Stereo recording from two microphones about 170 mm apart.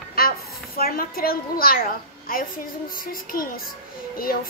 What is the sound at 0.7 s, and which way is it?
A woman's voice, 60° left (ahead or behind).